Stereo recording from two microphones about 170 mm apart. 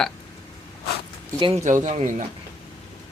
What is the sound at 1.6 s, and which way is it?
Speech, 45° right (ahead or behind).